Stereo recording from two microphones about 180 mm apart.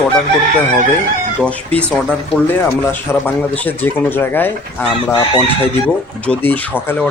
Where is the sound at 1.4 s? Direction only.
5° left (ahead or behind).